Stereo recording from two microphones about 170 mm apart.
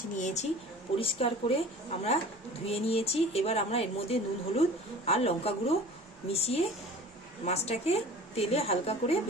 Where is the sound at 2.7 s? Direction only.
35° left (ahead or behind).